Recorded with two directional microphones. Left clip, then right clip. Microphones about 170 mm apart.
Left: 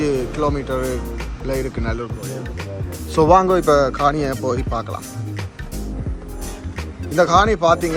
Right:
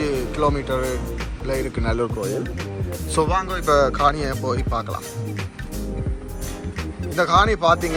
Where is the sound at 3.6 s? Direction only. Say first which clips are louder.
Left 2 dB; 15° left (ahead or behind).